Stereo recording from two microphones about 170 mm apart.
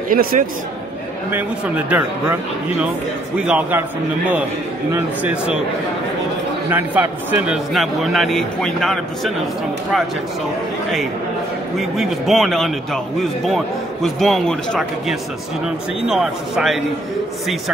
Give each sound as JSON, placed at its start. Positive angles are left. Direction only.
{"t": 0.1, "sound": "a man's voice", "side_deg": -55}
{"t": 1.9, "sound": "speech", "side_deg": -10}
{"t": 3.3, "sound": "speech", "side_deg": -5}
{"t": 4.9, "sound": "speech", "side_deg": -10}
{"t": 6.7, "sound": "a man's voice", "side_deg": -10}
{"t": 11.8, "sound": "a man's voice", "side_deg": 0}